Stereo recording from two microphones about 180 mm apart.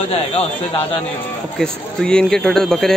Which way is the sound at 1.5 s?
5° left (ahead or behind).